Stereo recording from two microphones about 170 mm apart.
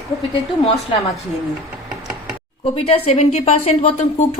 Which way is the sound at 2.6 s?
35° left (ahead or behind).